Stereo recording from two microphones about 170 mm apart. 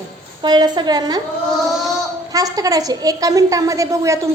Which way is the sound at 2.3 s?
20° right (ahead or behind).